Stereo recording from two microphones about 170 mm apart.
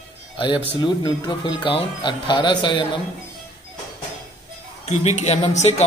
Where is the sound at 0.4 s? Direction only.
25° left (ahead or behind).